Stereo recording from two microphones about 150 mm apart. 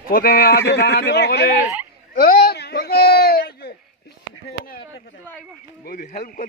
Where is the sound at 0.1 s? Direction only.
80° left.